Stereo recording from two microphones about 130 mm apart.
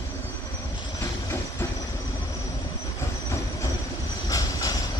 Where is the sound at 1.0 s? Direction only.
20° left (ahead or behind).